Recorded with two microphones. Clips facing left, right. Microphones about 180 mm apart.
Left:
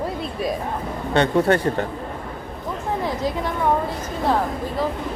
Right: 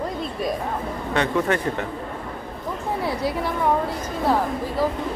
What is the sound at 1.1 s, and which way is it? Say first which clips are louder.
Speech: left 4 dB; 35° left (ahead or behind).